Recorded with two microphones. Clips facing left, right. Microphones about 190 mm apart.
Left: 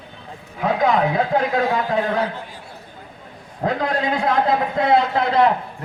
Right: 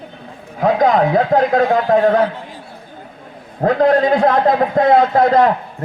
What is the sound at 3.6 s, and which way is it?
A man's voice, 45° right (ahead or behind).